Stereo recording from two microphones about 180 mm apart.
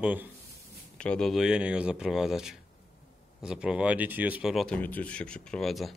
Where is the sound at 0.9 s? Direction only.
5° left (ahead or behind).